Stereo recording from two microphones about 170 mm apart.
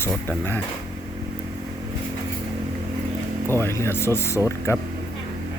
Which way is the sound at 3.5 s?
15° left (ahead or behind).